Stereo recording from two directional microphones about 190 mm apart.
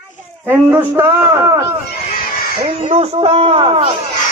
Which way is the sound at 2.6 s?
30° right (ahead or behind).